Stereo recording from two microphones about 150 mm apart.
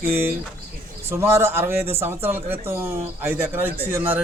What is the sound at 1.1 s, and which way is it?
Speech, 15° right (ahead or behind).